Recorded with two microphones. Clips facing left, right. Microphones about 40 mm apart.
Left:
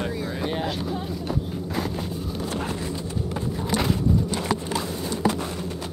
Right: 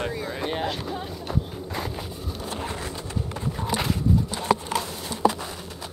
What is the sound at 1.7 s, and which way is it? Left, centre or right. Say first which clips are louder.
Vehicle: left 4 dB; centre.